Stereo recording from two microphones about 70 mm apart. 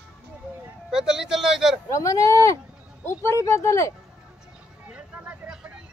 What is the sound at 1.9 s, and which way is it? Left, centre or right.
Speech, left.